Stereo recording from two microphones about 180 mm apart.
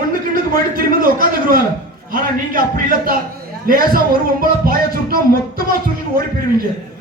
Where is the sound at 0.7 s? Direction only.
50° right (ahead or behind).